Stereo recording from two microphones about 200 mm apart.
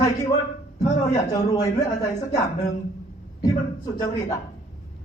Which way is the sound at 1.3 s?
20° left (ahead or behind).